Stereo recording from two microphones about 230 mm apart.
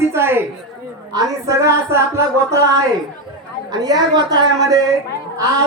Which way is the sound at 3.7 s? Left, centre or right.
Centre.